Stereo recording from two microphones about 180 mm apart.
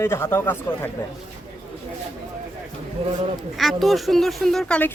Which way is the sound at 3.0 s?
35° right (ahead or behind).